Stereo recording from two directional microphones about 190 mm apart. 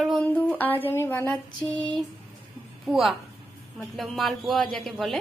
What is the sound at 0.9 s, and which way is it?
Speech, 10° left (ahead or behind).